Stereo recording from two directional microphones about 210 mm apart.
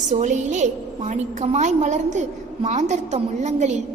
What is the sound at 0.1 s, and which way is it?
A woman's voice, 35° right (ahead or behind).